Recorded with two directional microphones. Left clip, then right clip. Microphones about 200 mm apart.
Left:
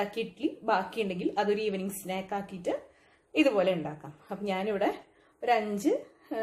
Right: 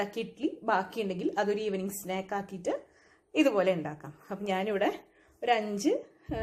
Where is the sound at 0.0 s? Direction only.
30° right (ahead or behind).